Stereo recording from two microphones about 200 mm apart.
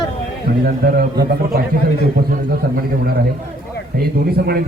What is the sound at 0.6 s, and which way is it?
A man's voice, 50° right (ahead or behind).